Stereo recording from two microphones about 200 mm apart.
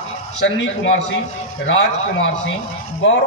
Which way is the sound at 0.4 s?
65° left (ahead or behind).